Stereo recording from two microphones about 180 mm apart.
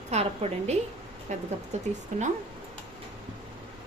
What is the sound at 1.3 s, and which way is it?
Speech, 40° right (ahead or behind).